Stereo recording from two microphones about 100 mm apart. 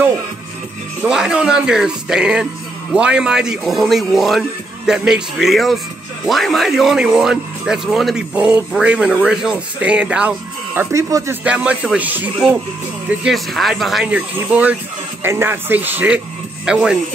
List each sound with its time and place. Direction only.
1.0 s a man's voice: 5° right (ahead or behind)
10.9 s speech: 30° right (ahead or behind)
11.4 s speech: 10° right (ahead or behind)
13.2 s a man's voice: centre (ahead or behind)
14.0 s speech: 15° right (ahead or behind)
16.6 s a man's voice: 5° right (ahead or behind)